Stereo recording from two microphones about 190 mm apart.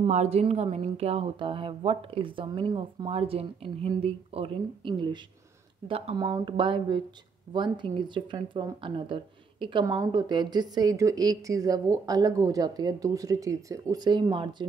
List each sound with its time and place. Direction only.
0.0 s speech: 35° right (ahead or behind)